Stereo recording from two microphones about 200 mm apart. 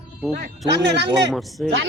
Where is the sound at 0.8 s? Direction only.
55° right (ahead or behind).